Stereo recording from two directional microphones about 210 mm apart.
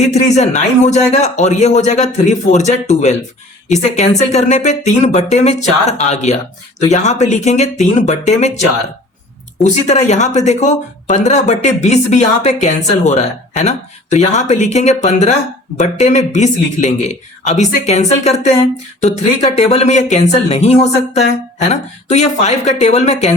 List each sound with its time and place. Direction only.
0.1 s speech: 35° left (ahead or behind)
9.6 s speech: 35° left (ahead or behind)